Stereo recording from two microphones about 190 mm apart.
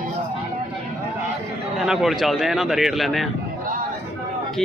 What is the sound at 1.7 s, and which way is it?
A man's voice, centre (ahead or behind).